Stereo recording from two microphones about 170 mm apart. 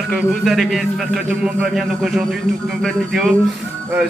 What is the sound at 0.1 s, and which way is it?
A man's voice, centre (ahead or behind).